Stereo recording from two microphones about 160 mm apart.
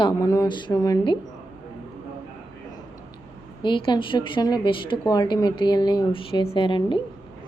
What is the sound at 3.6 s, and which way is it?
A woman's voice, 30° left (ahead or behind).